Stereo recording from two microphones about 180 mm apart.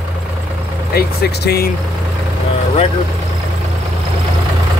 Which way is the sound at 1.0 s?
60° left (ahead or behind).